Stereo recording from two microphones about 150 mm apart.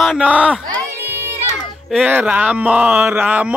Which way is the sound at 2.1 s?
10° right (ahead or behind).